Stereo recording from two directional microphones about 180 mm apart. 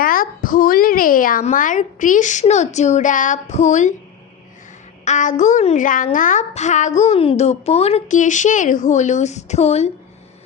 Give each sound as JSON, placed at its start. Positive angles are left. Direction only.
{"t": 0.0, "sound": "a woman's voice", "side_deg": 50}
{"t": 5.0, "sound": "a woman's voice", "side_deg": 45}